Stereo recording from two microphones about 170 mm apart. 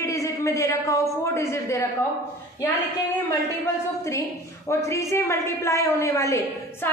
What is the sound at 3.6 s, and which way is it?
A woman's voice, 15° left (ahead or behind).